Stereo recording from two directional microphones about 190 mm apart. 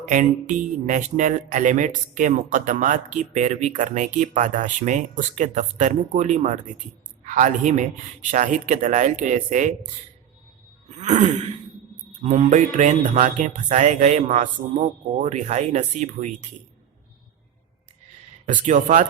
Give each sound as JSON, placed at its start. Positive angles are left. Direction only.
{"t": 0.1, "sound": "speech", "side_deg": -40}
{"t": 10.8, "sound": "groan", "side_deg": -35}
{"t": 12.2, "sound": "speech", "side_deg": -35}
{"t": 18.4, "sound": "speech", "side_deg": -40}